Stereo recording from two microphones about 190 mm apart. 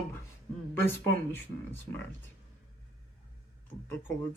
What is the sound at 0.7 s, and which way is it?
Speech, 10° left (ahead or behind).